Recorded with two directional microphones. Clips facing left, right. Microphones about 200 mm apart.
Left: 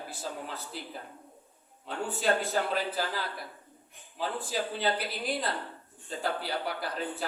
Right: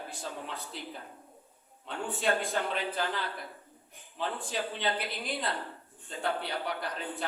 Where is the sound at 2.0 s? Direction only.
Centre (ahead or behind).